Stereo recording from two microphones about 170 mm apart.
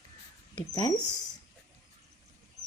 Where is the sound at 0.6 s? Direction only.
20° left (ahead or behind).